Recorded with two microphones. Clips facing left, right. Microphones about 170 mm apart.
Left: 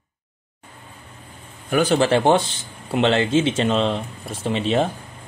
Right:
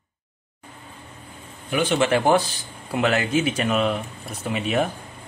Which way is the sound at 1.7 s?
40° left (ahead or behind).